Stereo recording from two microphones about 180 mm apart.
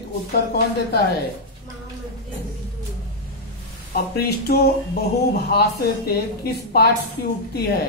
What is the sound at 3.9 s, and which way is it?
Speech, 60° left (ahead or behind).